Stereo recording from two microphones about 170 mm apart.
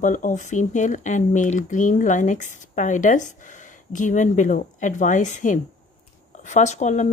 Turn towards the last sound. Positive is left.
turn(degrees=45)  # may be behind; listen again after turning